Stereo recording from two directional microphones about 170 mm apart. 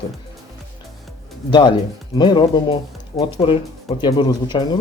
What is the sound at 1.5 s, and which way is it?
Speech, 25° left (ahead or behind).